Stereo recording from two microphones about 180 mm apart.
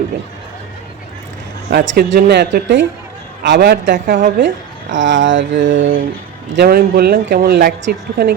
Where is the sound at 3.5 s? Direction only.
65° right (ahead or behind).